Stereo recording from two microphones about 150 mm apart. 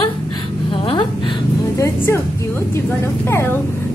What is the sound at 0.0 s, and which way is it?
Gasp, 35° left (ahead or behind).